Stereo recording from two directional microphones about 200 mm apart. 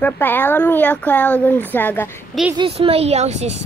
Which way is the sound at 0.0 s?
10° left (ahead or behind).